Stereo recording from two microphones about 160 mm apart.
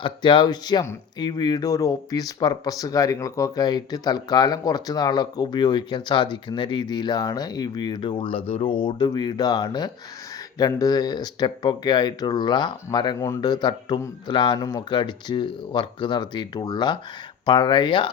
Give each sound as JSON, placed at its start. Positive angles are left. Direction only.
{"t": 0.0, "sound": "speech", "side_deg": 30}